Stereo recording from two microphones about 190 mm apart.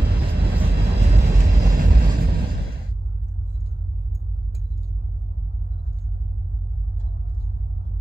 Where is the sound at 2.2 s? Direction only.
55° right (ahead or behind).